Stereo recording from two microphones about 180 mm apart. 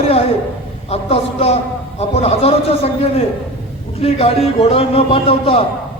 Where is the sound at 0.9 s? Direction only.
35° left (ahead or behind).